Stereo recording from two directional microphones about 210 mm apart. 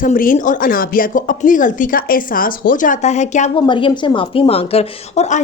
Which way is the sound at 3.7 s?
25° left (ahead or behind).